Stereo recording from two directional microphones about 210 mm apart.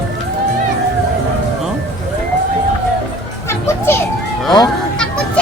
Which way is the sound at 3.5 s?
10° left (ahead or behind).